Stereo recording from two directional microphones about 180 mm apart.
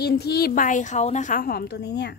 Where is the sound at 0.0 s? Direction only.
65° left (ahead or behind).